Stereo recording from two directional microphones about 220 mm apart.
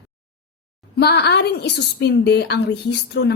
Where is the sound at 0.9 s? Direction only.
50° left (ahead or behind).